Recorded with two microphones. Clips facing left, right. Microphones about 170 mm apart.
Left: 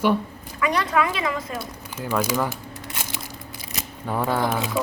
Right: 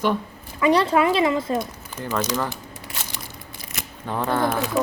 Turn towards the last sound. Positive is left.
turn(degrees=5)  # may be behind; listen again after turning